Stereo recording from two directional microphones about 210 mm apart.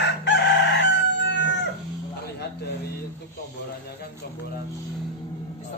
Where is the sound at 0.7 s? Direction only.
55° left (ahead or behind).